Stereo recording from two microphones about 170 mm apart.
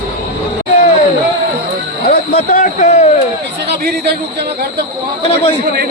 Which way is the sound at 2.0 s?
55° left (ahead or behind).